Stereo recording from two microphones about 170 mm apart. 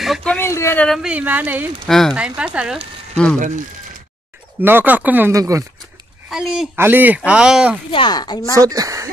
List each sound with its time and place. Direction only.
0.0 s speech: centre (ahead or behind)
0.4 s speech: 15° left (ahead or behind)
0.8 s speech: centre (ahead or behind)
1.9 s speech: centre (ahead or behind)
3.3 s speech: 50° right (ahead or behind)
4.6 s speech: 10° right (ahead or behind)
6.3 s speech: centre (ahead or behind)
7.9 s speech: 25° left (ahead or behind)
8.5 s speech: 20° right (ahead or behind)